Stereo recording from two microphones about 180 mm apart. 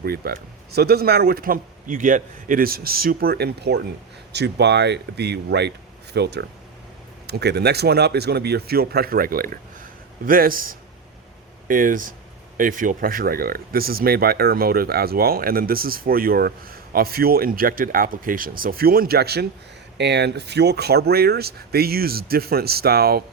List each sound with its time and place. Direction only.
0.0 s a man's voice: 60° right (ahead or behind)